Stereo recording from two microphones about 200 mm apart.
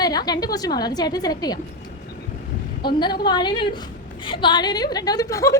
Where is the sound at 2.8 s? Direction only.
20° left (ahead or behind).